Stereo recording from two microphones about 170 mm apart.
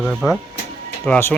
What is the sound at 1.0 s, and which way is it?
Speech, 15° left (ahead or behind).